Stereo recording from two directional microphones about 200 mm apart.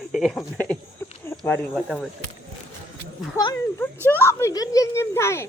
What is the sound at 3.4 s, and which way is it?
Speech, 20° left (ahead or behind).